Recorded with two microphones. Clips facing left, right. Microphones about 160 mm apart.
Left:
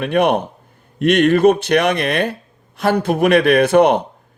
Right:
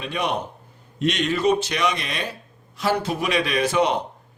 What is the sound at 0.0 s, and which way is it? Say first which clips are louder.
A man's voice: left 10 dB; 60° left (ahead or behind).